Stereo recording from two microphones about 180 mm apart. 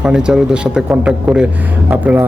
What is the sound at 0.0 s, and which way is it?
A man's voice, 5° right (ahead or behind).